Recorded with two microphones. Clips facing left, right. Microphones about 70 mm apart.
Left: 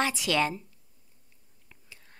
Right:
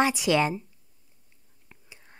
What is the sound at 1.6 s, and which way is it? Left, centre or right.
Whispering, centre.